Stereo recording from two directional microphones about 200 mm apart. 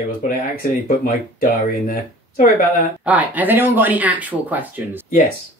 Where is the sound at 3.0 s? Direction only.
10° right (ahead or behind).